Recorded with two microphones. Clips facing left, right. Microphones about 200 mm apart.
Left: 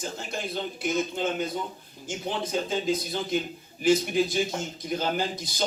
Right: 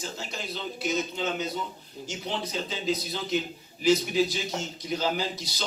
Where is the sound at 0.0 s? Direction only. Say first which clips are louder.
Left 3 dB; 55° left (ahead or behind).